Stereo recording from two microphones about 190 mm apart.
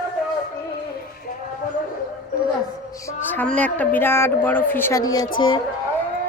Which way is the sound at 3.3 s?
5° left (ahead or behind).